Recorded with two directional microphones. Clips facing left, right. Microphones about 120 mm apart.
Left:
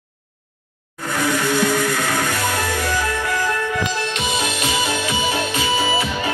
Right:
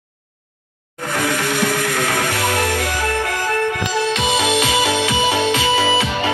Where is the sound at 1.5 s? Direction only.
70° right (ahead or behind).